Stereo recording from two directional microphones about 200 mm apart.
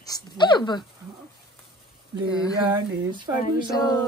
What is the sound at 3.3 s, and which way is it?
Speech, 15° right (ahead or behind).